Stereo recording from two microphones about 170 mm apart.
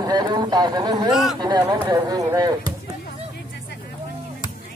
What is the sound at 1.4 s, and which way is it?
Speech, 25° right (ahead or behind).